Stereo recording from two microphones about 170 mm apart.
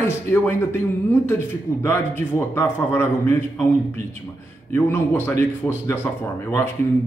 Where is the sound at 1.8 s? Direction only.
15° left (ahead or behind).